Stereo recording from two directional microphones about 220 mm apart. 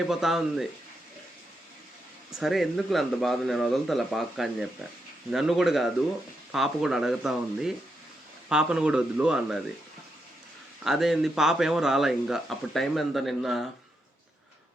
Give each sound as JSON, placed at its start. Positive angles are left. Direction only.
{"t": 0.1, "sound": "speech", "side_deg": 0}
{"t": 2.4, "sound": "speech", "side_deg": 0}
{"t": 10.8, "sound": "speech", "side_deg": 0}